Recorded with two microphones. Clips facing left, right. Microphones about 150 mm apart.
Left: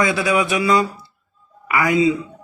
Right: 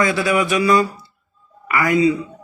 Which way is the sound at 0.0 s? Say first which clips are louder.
Even; 20° left (ahead or behind).